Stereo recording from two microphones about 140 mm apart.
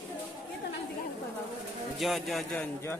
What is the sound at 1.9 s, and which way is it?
Speech, centre (ahead or behind).